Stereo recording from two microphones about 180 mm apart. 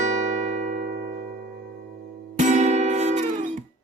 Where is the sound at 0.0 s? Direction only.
40° right (ahead or behind).